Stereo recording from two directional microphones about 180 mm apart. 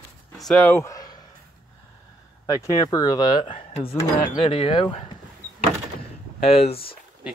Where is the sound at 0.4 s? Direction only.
5° left (ahead or behind).